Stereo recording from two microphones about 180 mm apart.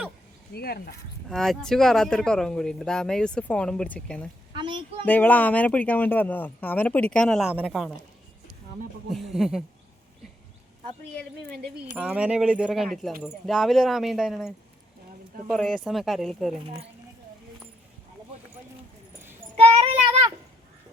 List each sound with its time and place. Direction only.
0.5 s speech: 60° left (ahead or behind)
1.3 s speech: centre (ahead or behind)
4.5 s speech: 25° right (ahead or behind)
5.0 s speech: 10° left (ahead or behind)
9.0 s speech: centre (ahead or behind)
11.9 s speech: 5° right (ahead or behind)
19.5 s child singing: 35° right (ahead or behind)